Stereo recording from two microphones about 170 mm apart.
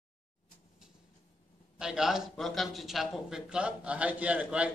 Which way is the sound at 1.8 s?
5° right (ahead or behind).